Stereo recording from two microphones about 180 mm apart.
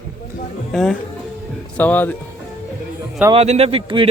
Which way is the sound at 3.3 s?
35° right (ahead or behind).